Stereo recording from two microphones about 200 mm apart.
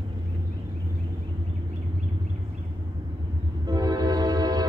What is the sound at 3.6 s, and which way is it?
Train, 20° right (ahead or behind).